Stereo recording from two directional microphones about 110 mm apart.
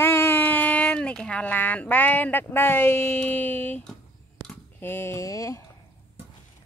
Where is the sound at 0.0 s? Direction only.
20° left (ahead or behind).